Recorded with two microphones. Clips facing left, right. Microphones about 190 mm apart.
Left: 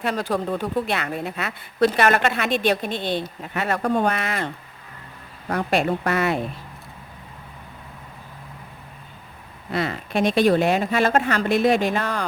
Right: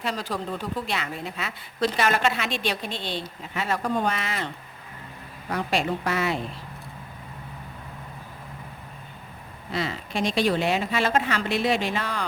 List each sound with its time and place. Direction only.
0.0 s a woman's voice: 55° left (ahead or behind)
5.5 s a woman's voice: 55° left (ahead or behind)
9.7 s speech: 55° left (ahead or behind)